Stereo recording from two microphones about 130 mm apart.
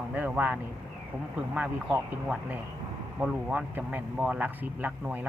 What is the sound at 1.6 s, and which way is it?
Speech, 10° right (ahead or behind).